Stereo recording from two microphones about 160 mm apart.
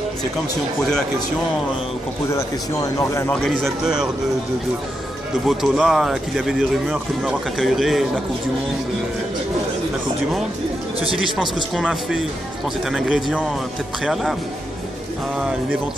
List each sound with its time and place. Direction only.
2.3 s speech: 20° left (ahead or behind)
3.3 s speech: 5° left (ahead or behind)
5.5 s speech: centre (ahead or behind)
11.7 s speech: centre (ahead or behind)